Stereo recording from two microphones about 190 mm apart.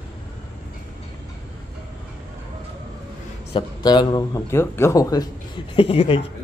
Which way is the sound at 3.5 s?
20° left (ahead or behind).